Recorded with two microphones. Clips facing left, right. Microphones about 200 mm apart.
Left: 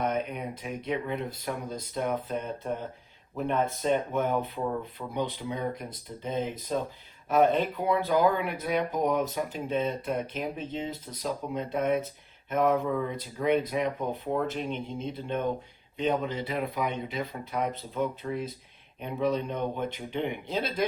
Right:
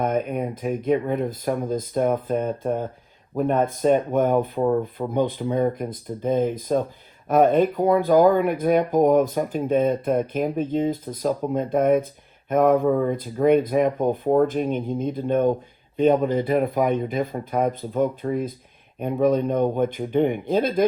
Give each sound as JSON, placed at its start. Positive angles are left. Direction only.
{"t": 0.0, "sound": "speech", "side_deg": -50}